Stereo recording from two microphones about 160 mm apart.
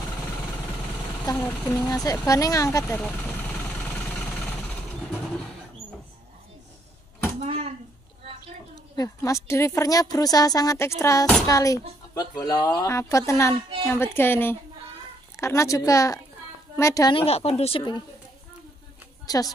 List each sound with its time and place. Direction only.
1.2 s speech: 15° left (ahead or behind)
1.9 s a woman's voice: 20° left (ahead or behind)
3.8 s vehicle: 5° left (ahead or behind)
7.3 s a sound: 35° right (ahead or behind)
8.9 s a woman's voice: 20° left (ahead or behind)
17.1 s a woman's voice: 40° left (ahead or behind)
19.2 s a woman's voice: 25° left (ahead or behind)